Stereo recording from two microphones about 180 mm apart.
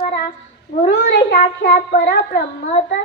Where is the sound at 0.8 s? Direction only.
75° left (ahead or behind).